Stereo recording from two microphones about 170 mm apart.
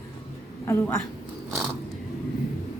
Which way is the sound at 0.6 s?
15° left (ahead or behind).